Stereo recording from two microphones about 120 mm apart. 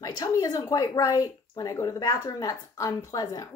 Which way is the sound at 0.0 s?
30° left (ahead or behind).